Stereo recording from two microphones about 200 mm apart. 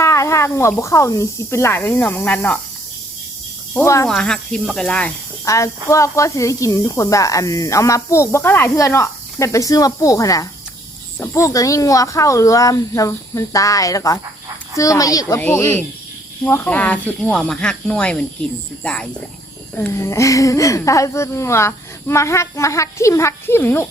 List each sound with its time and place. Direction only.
0.0 s speech: 15° left (ahead or behind)
3.8 s speech: 10° left (ahead or behind)
5.5 s speech: 15° left (ahead or behind)